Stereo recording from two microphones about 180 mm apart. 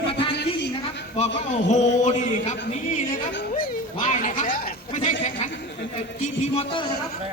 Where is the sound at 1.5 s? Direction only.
40° left (ahead or behind).